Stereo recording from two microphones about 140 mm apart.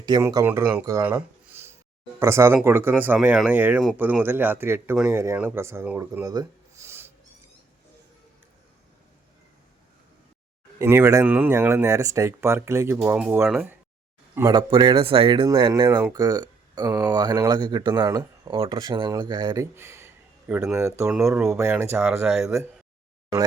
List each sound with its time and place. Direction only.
0.2 s speech: 20° right (ahead or behind)
1.0 s a sound: 15° right (ahead or behind)
2.1 s speech: 20° right (ahead or behind)
6.2 s a sound: 25° right (ahead or behind)
10.8 s speech: 20° right (ahead or behind)
14.5 s speech: 35° right (ahead or behind)
18.4 s speech: 40° right (ahead or behind)
18.8 s speech: 30° right (ahead or behind)
19.7 s speech: 20° right (ahead or behind)